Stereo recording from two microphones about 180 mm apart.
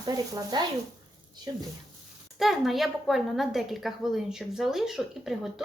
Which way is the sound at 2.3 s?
Centre (ahead or behind).